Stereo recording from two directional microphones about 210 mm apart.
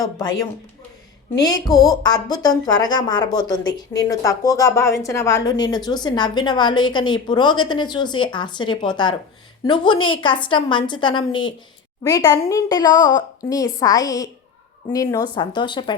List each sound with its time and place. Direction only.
0.0 s a woman's voice: 15° left (ahead or behind)